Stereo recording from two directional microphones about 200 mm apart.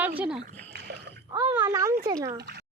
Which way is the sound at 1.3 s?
15° right (ahead or behind).